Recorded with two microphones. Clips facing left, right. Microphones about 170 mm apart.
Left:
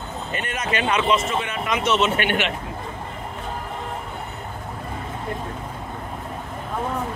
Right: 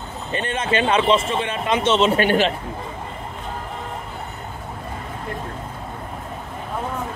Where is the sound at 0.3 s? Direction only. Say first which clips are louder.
Right 5 dB; 30° right (ahead or behind).